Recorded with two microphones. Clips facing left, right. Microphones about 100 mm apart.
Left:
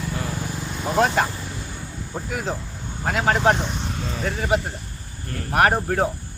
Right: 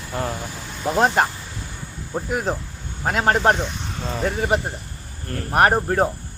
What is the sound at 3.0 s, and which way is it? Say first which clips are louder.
Speech: right 1 dB; 45° right (ahead or behind).